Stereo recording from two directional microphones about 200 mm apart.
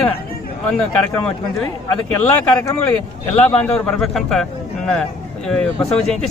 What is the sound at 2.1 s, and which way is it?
Speech, 15° left (ahead or behind).